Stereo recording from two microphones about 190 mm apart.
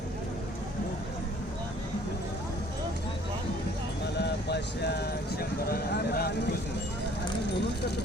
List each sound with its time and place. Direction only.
4.2 s clip-clop: 60° left (ahead or behind)